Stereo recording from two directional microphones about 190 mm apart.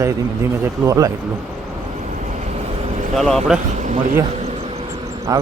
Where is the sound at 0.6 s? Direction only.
15° right (ahead or behind).